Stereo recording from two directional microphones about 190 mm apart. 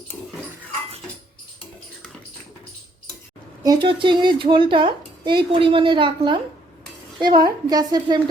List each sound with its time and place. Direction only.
3.6 s speech: 20° right (ahead or behind)